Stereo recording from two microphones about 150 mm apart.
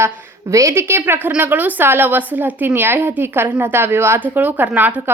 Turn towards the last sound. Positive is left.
turn(degrees=-10)  # may be behind; listen again after turning